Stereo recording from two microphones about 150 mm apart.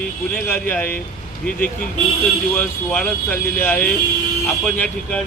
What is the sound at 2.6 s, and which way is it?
Speech, 10° left (ahead or behind).